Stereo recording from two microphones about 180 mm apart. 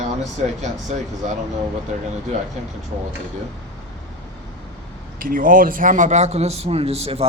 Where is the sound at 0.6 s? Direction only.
40° right (ahead or behind).